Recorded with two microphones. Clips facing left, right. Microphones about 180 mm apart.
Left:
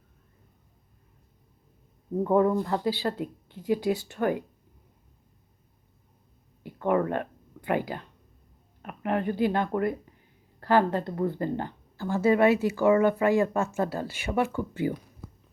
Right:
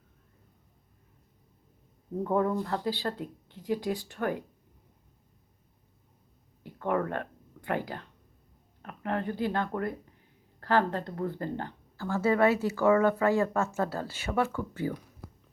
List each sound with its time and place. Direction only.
2.3 s speech: 10° left (ahead or behind)
6.7 s a sound: 10° left (ahead or behind)
8.8 s speech: 15° left (ahead or behind)